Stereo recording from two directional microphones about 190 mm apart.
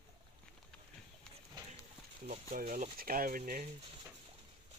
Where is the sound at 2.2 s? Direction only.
35° right (ahead or behind).